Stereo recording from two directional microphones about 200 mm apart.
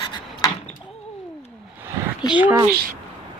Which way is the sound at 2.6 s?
45° right (ahead or behind).